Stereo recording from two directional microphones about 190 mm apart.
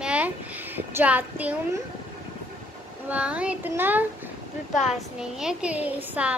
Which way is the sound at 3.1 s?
5° right (ahead or behind).